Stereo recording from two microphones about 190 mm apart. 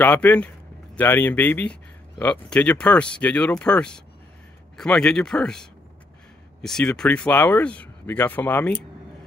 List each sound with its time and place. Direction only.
0.0 s speech: 10° left (ahead or behind)